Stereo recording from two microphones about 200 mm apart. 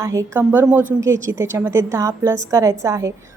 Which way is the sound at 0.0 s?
15° right (ahead or behind).